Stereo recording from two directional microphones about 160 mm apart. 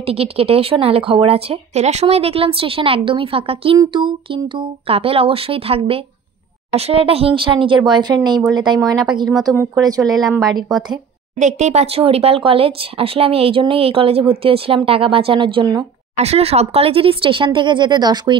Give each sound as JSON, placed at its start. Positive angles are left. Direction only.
{"t": 0.0, "sound": "speech", "side_deg": -40}
{"t": 10.7, "sound": "speech", "side_deg": 0}
{"t": 11.3, "sound": "speech", "side_deg": -45}
{"t": 16.2, "sound": "speech", "side_deg": -40}